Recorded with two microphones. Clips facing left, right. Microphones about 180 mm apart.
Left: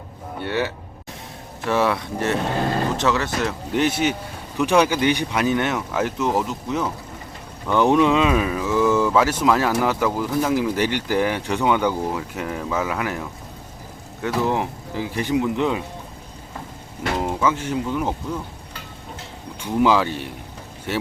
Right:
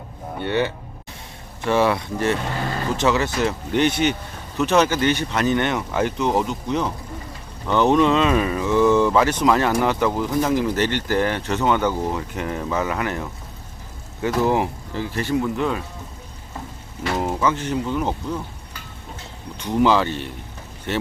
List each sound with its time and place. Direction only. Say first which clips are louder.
0.4 s speech: right 2 dB; 5° left (ahead or behind)
14.9 s speech: left 1 dB; 15° left (ahead or behind)
17.4 s speech: even; 10° left (ahead or behind)
19.5 s speech: even; 10° left (ahead or behind)